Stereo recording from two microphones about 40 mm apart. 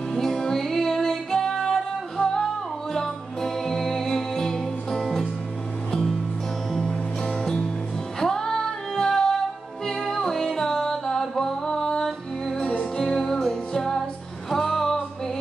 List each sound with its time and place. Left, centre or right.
0.1 s music: centre
8.2 s female singing: centre
10.1 s music: centre